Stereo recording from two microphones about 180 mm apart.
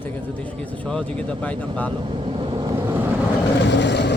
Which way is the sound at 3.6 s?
75° left (ahead or behind).